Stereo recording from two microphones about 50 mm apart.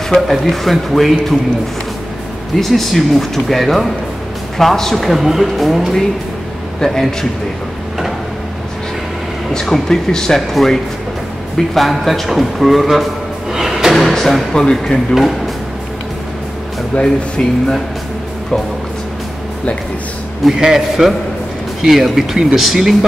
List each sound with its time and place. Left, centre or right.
0.1 s a man's voice: centre
2.5 s a man's voice: centre
6.8 s speech: centre
9.5 s a man's voice: centre
13.5 s music: centre
13.9 s music: centre
14.5 s speech: centre
15.1 s a man's voice: centre
16.9 s speech: centre
20.4 s a man's voice: centre